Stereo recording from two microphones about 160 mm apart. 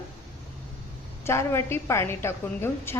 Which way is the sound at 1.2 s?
15° left (ahead or behind).